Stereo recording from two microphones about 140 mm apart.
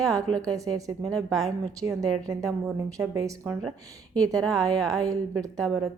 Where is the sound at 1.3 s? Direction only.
Centre (ahead or behind).